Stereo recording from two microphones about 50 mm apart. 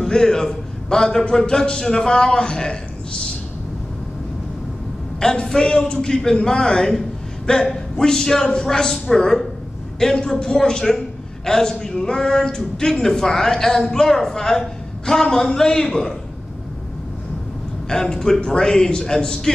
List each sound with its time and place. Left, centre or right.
0.0 s speech: centre
5.2 s a man's voice: centre
17.8 s speech: centre